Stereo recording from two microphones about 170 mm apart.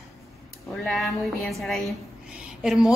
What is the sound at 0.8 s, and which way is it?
A woman's voice, centre (ahead or behind).